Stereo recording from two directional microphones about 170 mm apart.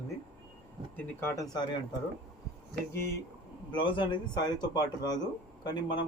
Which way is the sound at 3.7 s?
25° left (ahead or behind).